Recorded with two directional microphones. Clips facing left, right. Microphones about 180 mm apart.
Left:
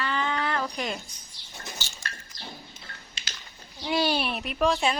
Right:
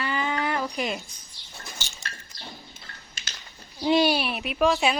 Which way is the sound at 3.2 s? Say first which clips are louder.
Even; 45° right (ahead or behind).